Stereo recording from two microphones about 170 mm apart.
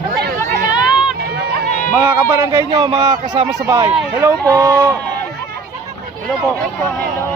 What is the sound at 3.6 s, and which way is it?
Speech, 15° right (ahead or behind).